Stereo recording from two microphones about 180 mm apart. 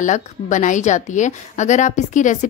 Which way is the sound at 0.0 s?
45° left (ahead or behind).